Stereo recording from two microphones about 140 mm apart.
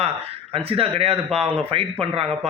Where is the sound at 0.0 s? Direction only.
45° right (ahead or behind).